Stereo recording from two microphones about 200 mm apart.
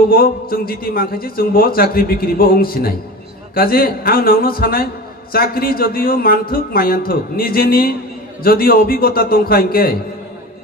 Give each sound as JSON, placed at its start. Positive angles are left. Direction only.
{"t": 0.1, "sound": "a man's voice", "side_deg": 45}